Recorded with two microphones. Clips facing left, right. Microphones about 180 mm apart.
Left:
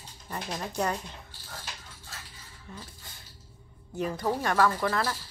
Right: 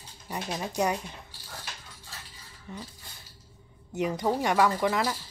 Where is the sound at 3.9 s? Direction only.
20° right (ahead or behind).